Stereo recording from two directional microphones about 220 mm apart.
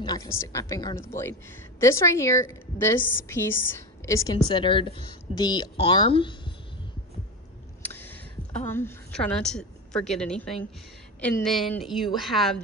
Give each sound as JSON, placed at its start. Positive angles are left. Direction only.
{"t": 0.0, "sound": "a woman's voice", "side_deg": 15}
{"t": 7.8, "sound": "a sound", "side_deg": 10}
{"t": 8.6, "sound": "a woman's voice", "side_deg": 10}